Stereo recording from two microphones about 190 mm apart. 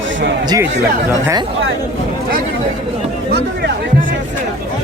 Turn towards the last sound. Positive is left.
turn(degrees=-60)  # may be behind; listen again after turning